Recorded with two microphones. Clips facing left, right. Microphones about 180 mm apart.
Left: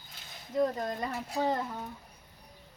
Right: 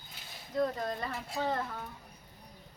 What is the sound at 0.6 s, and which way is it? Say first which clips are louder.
Speech: left 2 dB; 20° left (ahead or behind).